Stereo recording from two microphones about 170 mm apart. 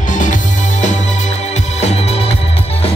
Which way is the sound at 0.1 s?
50° left (ahead or behind).